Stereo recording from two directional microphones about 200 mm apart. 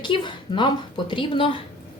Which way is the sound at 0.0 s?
25° left (ahead or behind).